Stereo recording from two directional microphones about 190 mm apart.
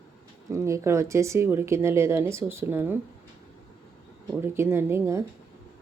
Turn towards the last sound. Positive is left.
turn(degrees=-15)  # may be behind; listen again after turning